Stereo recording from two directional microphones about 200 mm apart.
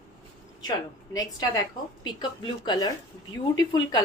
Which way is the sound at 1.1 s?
20° left (ahead or behind).